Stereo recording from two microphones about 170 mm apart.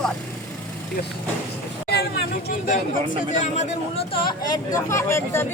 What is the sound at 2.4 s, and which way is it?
Speech, 50° left (ahead or behind).